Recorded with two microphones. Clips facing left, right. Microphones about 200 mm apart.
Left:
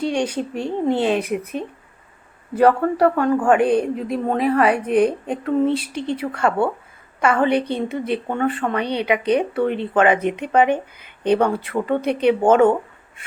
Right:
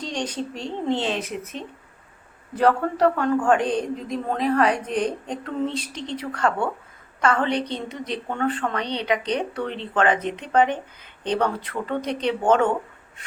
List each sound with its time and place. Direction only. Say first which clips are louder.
0.0 s a woman's voice: left 7 dB; 10° left (ahead or behind)
2.6 s a woman's voice: left 4 dB; 10° left (ahead or behind)